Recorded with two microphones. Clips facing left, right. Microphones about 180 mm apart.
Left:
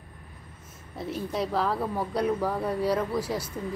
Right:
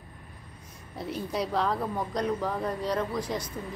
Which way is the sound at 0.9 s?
Centre (ahead or behind).